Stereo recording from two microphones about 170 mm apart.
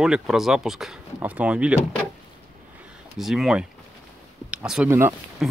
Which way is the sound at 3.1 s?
Centre (ahead or behind).